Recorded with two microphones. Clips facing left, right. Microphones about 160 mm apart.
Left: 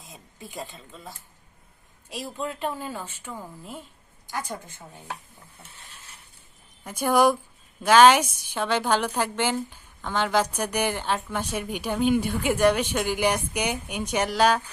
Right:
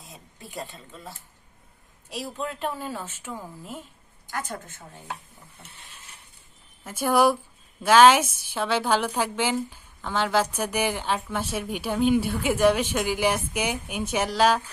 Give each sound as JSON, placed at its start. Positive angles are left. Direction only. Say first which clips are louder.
{"t": 0.0, "sound": "speech", "louder": "left 1 dB", "side_deg": 0}
{"t": 2.1, "sound": "a woman's voice", "louder": "even", "side_deg": 0}
{"t": 4.3, "sound": "a woman's voice", "louder": "even", "side_deg": 15}
{"t": 6.8, "sound": "a woman's voice", "louder": "even", "side_deg": -5}